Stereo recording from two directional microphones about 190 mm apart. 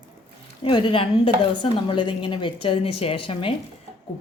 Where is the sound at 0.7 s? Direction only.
25° left (ahead or behind).